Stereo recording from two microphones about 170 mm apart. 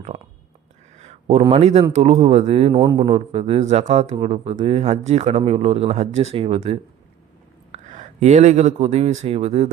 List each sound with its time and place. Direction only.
0.9 s speech: 40° right (ahead or behind)